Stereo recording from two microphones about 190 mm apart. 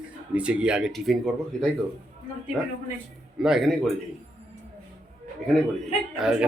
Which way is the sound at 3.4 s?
Centre (ahead or behind).